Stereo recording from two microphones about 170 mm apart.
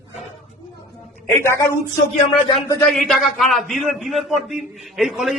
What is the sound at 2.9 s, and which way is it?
A man's voice, centre (ahead or behind).